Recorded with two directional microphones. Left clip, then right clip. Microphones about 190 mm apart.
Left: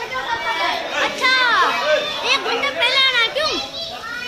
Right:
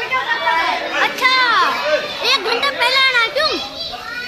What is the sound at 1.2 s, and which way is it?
Children playing, 20° right (ahead or behind).